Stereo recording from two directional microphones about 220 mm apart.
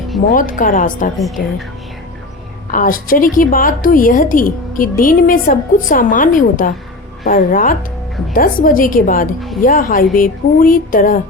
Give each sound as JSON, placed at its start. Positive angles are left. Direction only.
{"t": 0.3, "sound": "a woman's voice", "side_deg": 40}
{"t": 2.7, "sound": "a woman's voice", "side_deg": 40}